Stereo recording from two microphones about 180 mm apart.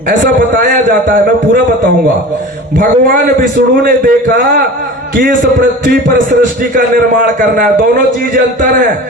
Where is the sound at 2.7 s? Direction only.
50° right (ahead or behind).